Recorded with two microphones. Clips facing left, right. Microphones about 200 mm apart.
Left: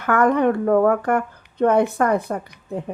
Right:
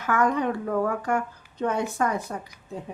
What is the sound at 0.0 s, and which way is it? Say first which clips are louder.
A woman's voice: left 6 dB; 60° left (ahead or behind).